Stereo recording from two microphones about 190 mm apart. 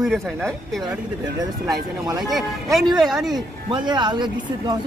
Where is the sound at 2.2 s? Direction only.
Centre (ahead or behind).